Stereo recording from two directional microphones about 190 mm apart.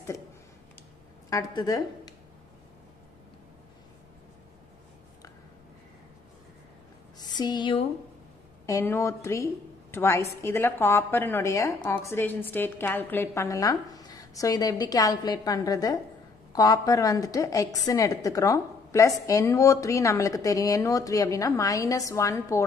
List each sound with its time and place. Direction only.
1.3 s a woman's voice: 20° left (ahead or behind)
7.2 s a sound: 20° left (ahead or behind)
8.6 s a woman's voice: 15° left (ahead or behind)